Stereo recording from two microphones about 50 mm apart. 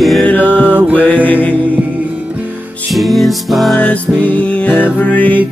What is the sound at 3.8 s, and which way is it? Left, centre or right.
Music, left.